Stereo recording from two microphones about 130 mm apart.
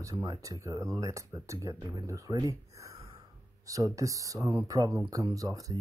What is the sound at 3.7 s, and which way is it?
Speech, 25° right (ahead or behind).